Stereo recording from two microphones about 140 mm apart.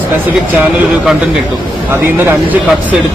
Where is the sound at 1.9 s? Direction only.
15° right (ahead or behind).